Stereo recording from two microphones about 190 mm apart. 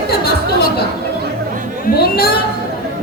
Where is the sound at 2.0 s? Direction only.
55° left (ahead or behind).